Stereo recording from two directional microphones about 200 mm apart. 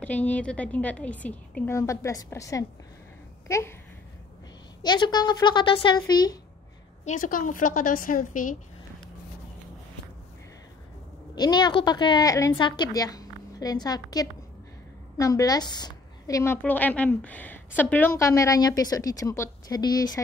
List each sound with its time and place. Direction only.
0.0 s a woman's voice: 5° left (ahead or behind)
4.8 s a woman's voice: 20° left (ahead or behind)
7.1 s a woman's voice: 40° left (ahead or behind)
11.3 s a woman's voice: 20° left (ahead or behind)